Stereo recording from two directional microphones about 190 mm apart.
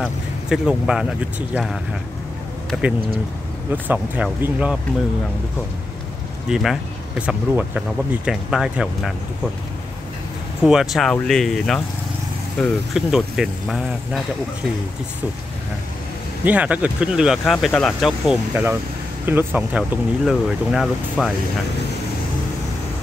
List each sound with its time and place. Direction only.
0.0 s speech: 5° right (ahead or behind)
3.7 s speech: 10° right (ahead or behind)
6.5 s speech: centre (ahead or behind)
10.6 s speech: centre (ahead or behind)
16.4 s speech: 5° right (ahead or behind)